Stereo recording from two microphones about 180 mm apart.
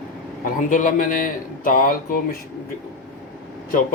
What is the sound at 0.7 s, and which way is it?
Speech, 45° left (ahead or behind).